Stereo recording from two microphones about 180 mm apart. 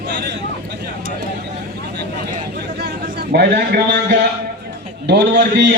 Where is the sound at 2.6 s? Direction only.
65° right (ahead or behind).